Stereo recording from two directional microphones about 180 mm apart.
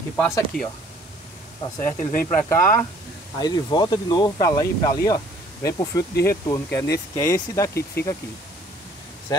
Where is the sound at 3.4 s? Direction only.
25° left (ahead or behind).